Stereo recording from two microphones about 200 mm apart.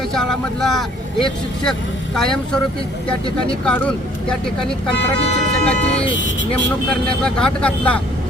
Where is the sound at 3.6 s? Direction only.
5° left (ahead or behind).